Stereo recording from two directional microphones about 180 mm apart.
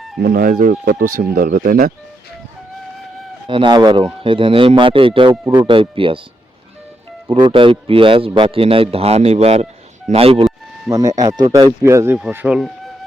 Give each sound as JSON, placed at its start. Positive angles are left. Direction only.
{"t": 0.2, "sound": "speech", "side_deg": -60}
{"t": 3.4, "sound": "speech", "side_deg": -25}
{"t": 7.3, "sound": "a man's voice", "side_deg": -30}
{"t": 10.8, "sound": "speech", "side_deg": -20}